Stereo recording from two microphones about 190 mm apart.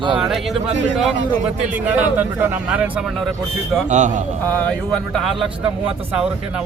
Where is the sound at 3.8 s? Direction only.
40° right (ahead or behind).